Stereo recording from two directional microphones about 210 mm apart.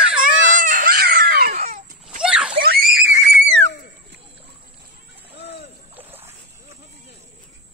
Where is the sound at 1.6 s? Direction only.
35° right (ahead or behind).